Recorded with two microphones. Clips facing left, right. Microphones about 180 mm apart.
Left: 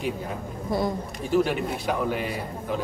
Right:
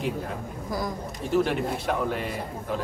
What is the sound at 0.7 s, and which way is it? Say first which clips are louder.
Speech: left 5 dB; 25° left (ahead or behind).